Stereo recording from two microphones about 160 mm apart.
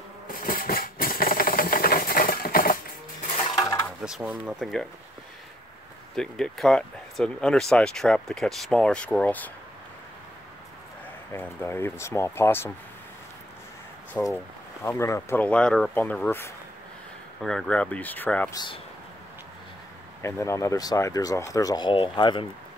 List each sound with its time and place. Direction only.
0.3 s a sound: 65° left (ahead or behind)
3.3 s dishes: 35° left (ahead or behind)
3.5 s a sound: 15° left (ahead or behind)
3.8 s speech: 5° right (ahead or behind)
6.1 s speech: 5° left (ahead or behind)
11.3 s speech: 15° left (ahead or behind)
14.2 s speech: 15° left (ahead or behind)
17.4 s speech: 5° left (ahead or behind)
18.5 s speech: 25° left (ahead or behind)
20.2 s speech: 15° left (ahead or behind)